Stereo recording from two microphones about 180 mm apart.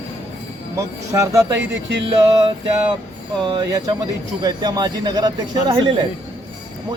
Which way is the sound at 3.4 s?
25° right (ahead or behind).